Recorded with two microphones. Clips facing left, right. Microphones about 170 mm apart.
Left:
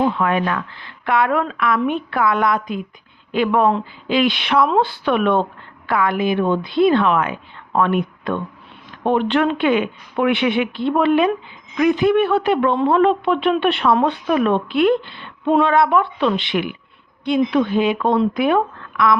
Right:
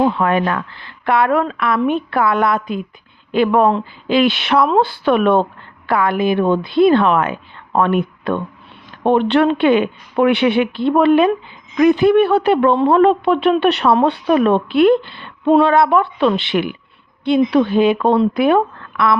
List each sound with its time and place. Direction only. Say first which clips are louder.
0.2 s speech: right 3 dB; 40° right (ahead or behind)